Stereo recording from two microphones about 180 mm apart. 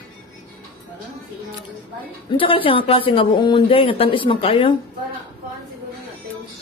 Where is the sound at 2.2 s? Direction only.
30° left (ahead or behind).